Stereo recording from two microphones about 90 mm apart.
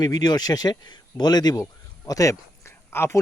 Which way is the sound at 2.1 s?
35° left (ahead or behind).